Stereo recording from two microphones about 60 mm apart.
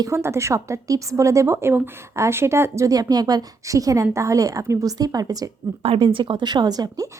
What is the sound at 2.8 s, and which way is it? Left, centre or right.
A woman's voice, right.